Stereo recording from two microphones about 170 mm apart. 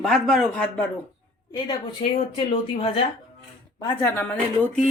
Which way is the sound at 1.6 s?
30° left (ahead or behind).